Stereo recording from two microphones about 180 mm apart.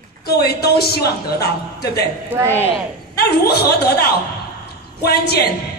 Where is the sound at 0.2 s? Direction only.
60° left (ahead or behind).